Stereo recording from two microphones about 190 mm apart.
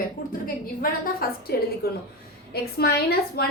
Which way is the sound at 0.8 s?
50° left (ahead or behind).